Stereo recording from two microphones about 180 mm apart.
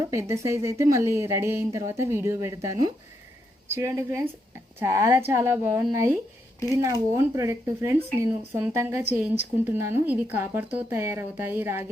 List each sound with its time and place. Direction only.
0.1 s speech: 15° right (ahead or behind)